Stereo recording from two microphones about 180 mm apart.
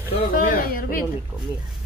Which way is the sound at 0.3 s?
50° left (ahead or behind).